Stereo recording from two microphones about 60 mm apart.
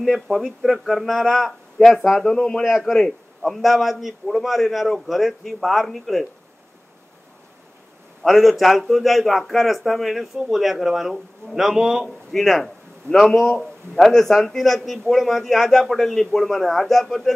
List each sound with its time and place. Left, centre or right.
0.0 s a man's voice: centre
8.2 s a man's voice: centre
12.3 s a man's voice: centre